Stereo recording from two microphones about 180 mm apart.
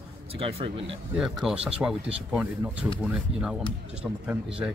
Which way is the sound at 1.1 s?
5° right (ahead or behind).